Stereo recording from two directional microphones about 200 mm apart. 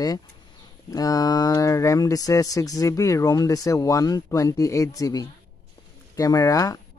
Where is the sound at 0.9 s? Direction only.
20° left (ahead or behind).